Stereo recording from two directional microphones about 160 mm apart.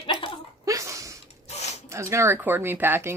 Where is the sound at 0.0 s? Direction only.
30° left (ahead or behind).